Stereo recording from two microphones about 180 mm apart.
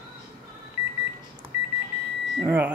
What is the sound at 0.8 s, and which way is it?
Microwave oven, 15° right (ahead or behind).